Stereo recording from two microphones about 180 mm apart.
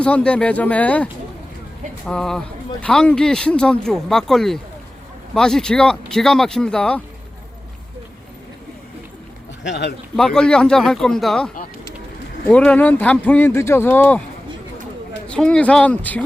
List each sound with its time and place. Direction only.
0.0 s speech: 5° left (ahead or behind)
2.0 s speech: 5° left (ahead or behind)
9.6 s speech: 65° left (ahead or behind)
10.2 s speech: 5° left (ahead or behind)
15.3 s speech: 5° left (ahead or behind)